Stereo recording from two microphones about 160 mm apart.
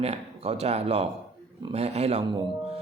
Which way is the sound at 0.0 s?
40° right (ahead or behind).